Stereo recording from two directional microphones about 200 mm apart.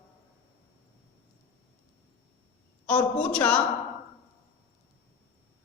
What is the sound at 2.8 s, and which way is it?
Speech, 5° left (ahead or behind).